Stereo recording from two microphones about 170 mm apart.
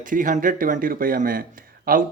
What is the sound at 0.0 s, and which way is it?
Speech, 50° right (ahead or behind).